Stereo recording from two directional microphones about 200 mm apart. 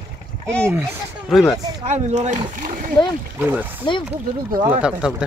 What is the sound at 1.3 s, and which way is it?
Speech, centre (ahead or behind).